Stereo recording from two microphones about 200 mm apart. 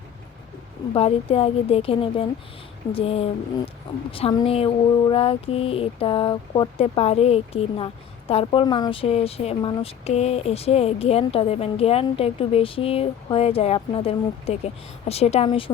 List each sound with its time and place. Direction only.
0.9 s speech: 30° left (ahead or behind)